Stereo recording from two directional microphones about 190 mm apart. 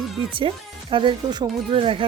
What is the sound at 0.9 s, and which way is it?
Speech, 25° right (ahead or behind).